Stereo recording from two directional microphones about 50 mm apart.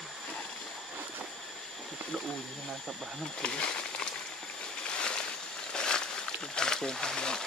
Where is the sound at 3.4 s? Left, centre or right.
Centre.